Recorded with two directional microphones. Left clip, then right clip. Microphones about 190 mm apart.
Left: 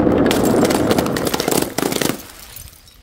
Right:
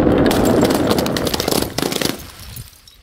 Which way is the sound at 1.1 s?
5° left (ahead or behind).